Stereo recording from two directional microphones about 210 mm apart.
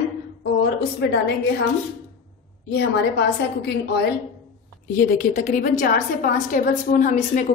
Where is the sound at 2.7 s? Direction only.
50° left (ahead or behind).